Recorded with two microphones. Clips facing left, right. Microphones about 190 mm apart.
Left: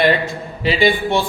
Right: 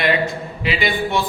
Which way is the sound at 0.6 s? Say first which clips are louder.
Left 5 dB; 30° left (ahead or behind).